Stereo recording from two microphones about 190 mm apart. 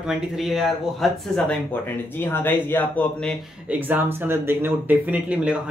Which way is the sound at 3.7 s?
10° right (ahead or behind).